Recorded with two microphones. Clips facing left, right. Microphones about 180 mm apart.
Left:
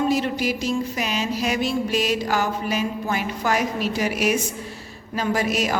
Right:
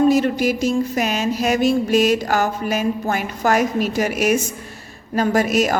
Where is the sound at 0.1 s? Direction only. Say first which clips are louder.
Right 5 dB; 45° right (ahead or behind).